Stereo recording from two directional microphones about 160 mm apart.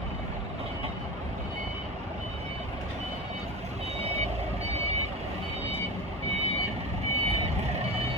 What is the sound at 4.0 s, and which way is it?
Vehicle, 45° right (ahead or behind).